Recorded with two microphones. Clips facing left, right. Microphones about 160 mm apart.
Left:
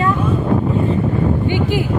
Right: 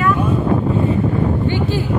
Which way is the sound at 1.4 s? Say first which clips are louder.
Left 1 dB; 15° left (ahead or behind).